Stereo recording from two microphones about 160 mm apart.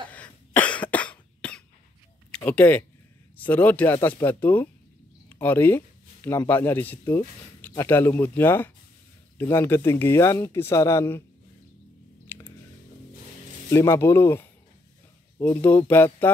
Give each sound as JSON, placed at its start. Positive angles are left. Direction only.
{"t": 0.1, "sound": "cough", "side_deg": 10}
{"t": 2.3, "sound": "speech", "side_deg": 10}
{"t": 13.7, "sound": "speech", "side_deg": 15}